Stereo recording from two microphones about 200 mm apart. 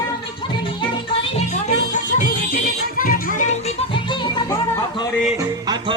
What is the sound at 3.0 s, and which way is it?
Music, 45° left (ahead or behind).